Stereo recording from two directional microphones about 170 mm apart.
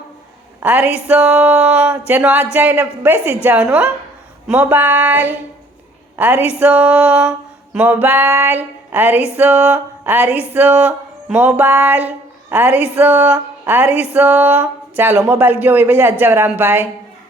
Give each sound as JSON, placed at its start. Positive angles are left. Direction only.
{"t": 0.6, "sound": "a woman's voice", "side_deg": -10}
{"t": 1.0, "sound": "music", "side_deg": -10}